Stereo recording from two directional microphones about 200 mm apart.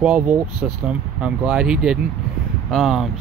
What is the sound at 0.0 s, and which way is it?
Speech, 5° right (ahead or behind).